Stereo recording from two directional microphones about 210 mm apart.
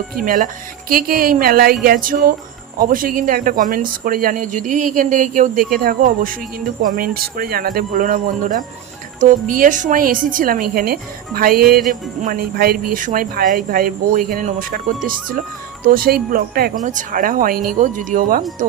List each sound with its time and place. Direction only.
0.2 s speech: 40° right (ahead or behind)